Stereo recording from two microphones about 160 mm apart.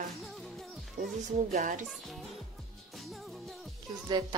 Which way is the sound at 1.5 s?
50° right (ahead or behind).